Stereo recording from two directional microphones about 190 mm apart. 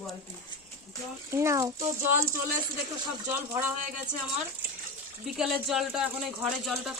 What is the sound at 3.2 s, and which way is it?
Speech, 10° right (ahead or behind).